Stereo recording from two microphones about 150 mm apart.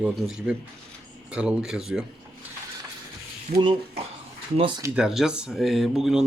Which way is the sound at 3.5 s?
90° right.